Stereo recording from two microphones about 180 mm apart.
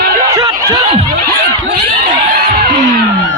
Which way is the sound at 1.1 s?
65° right (ahead or behind).